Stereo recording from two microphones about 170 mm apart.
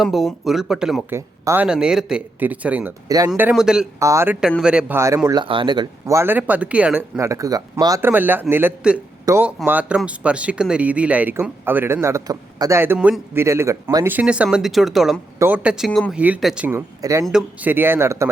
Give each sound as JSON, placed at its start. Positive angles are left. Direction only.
{"t": 0.0, "sound": "speech", "side_deg": 0}
{"t": 1.1, "sound": "speech", "side_deg": -15}
{"t": 3.1, "sound": "speech", "side_deg": -20}
{"t": 3.4, "sound": "speech", "side_deg": -5}
{"t": 4.0, "sound": "speech", "side_deg": -15}
{"t": 4.4, "sound": "speech", "side_deg": -5}
{"t": 16.6, "sound": "speech", "side_deg": -15}
{"t": 17.2, "sound": "speech", "side_deg": -5}